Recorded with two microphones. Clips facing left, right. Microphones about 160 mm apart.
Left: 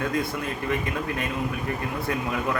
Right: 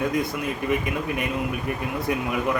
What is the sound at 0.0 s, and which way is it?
A man's voice, 15° right (ahead or behind).